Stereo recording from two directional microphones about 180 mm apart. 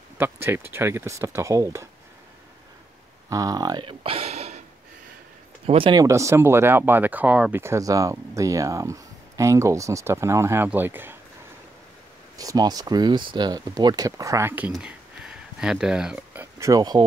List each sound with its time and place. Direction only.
0.2 s speech: 10° right (ahead or behind)
3.3 s speech: 20° right (ahead or behind); by 4.6 s 35° right (ahead or behind)
5.7 s speech: 30° right (ahead or behind); by 11.1 s 10° right (ahead or behind)
12.4 s speech: 20° right (ahead or behind)
14.7 s a sound: 5° right (ahead or behind)
16.5 s speech: 20° right (ahead or behind)